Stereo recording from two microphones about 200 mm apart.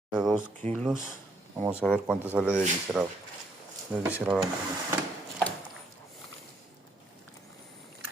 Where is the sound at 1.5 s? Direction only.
10° right (ahead or behind).